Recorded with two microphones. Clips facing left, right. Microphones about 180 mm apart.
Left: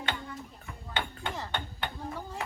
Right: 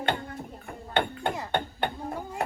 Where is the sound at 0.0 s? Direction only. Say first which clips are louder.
Right 6 dB; 55° right (ahead or behind).